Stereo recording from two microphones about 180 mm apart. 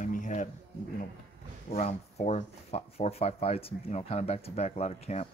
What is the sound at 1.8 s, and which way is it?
Speech, 40° left (ahead or behind).